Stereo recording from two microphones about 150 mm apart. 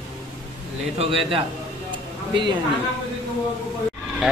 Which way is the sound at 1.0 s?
35° right (ahead or behind).